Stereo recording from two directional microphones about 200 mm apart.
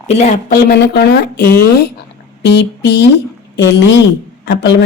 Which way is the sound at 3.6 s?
60° left (ahead or behind).